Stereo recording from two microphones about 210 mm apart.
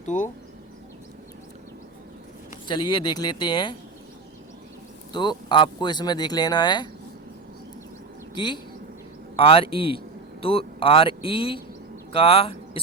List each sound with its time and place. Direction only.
0.0 s speech: 35° left (ahead or behind)
2.6 s speech: 20° left (ahead or behind)
5.1 s speech: 20° left (ahead or behind)
8.4 s speech: 20° left (ahead or behind)